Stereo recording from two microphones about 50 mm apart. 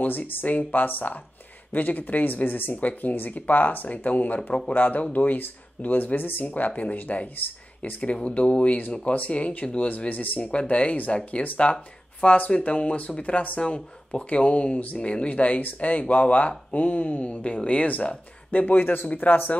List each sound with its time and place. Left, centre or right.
0.0 s speech: left
10.4 s speech: left
13.6 s speech: left